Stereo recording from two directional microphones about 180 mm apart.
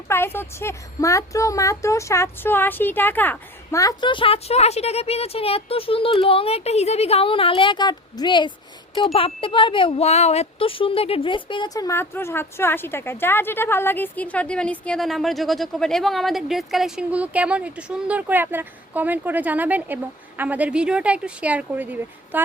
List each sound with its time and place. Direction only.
0.1 s speech: 15° left (ahead or behind); by 22.4 s 10° right (ahead or behind)